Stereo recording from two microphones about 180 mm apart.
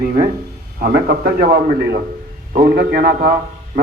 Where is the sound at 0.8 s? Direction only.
55° right (ahead or behind).